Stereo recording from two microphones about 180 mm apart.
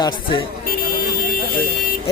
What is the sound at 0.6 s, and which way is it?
Vehicle, 55° left (ahead or behind).